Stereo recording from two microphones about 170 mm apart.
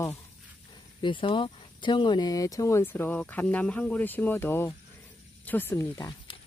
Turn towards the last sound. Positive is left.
turn(degrees=15)  # may be behind; listen again after turning